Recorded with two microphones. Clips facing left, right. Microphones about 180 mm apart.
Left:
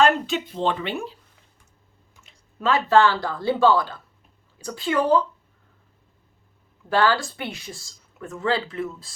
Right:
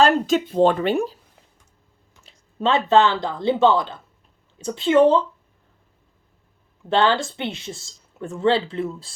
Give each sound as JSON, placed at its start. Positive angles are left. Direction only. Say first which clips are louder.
{"t": 0.0, "sound": "speech", "louder": "right 3 dB", "side_deg": -35}
{"t": 2.2, "sound": "a sound", "louder": "right 2 dB", "side_deg": -30}
{"t": 2.9, "sound": "speech", "louder": "even", "side_deg": -20}
{"t": 6.8, "sound": "speech", "louder": "right 2 dB", "side_deg": -25}